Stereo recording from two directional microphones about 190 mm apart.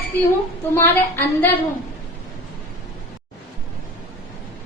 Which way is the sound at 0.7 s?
10° left (ahead or behind).